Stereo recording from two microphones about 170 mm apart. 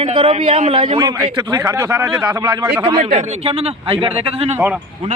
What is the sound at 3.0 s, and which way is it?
A man's voice, 35° right (ahead or behind).